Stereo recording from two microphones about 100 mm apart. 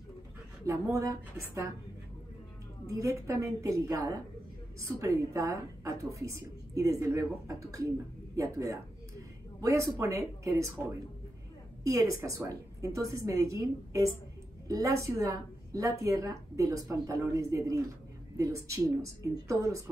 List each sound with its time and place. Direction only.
0.7 s a woman's voice: 30° right (ahead or behind)
2.9 s a woman's voice: 30° right (ahead or behind)